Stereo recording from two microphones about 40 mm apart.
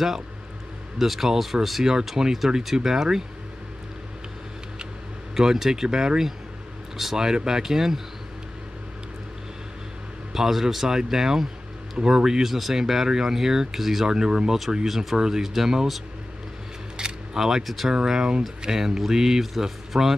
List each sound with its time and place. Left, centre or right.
0.9 s speech: centre
5.3 s speech: centre
10.3 s speech: centre
14.9 s speech: centre
16.9 s speech: centre
18.0 s speech: centre